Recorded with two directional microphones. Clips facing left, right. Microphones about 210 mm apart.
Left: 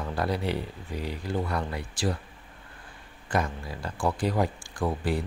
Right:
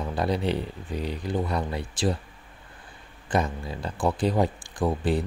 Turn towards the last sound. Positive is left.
turn(degrees=-20)  # may be behind; listen again after turning